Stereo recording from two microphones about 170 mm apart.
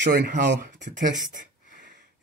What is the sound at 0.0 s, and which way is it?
Speech, 90° right.